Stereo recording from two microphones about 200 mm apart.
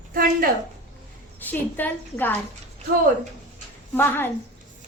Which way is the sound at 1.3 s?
10° left (ahead or behind).